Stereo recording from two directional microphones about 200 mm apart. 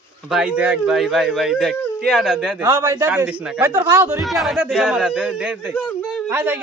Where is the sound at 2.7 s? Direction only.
20° right (ahead or behind).